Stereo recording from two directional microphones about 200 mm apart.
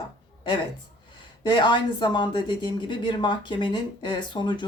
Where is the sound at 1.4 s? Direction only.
25° left (ahead or behind).